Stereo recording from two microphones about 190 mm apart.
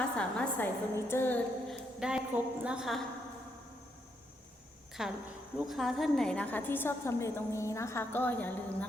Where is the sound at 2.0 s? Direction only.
5° right (ahead or behind).